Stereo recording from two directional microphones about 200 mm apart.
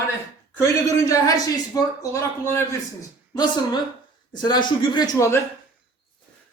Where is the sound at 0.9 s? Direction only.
20° left (ahead or behind).